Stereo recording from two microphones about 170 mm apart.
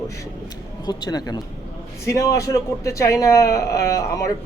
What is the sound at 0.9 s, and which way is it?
A man's voice, 25° left (ahead or behind).